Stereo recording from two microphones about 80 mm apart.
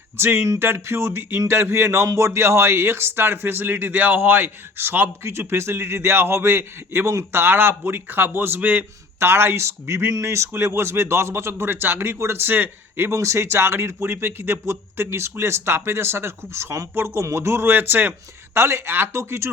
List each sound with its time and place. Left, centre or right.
0.2 s a man's voice: right
13.1 s a man's voice: right